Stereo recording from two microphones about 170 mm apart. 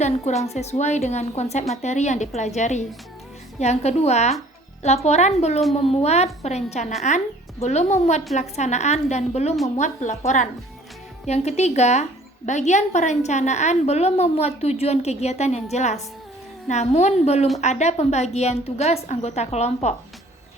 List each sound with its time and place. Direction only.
0.0 s a woman's voice: 40° left (ahead or behind)